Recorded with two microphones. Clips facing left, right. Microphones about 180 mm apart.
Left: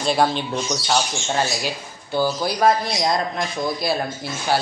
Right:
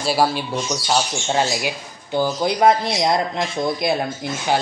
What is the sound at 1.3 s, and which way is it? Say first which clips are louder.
Speech: right 3 dB; 20° right (ahead or behind).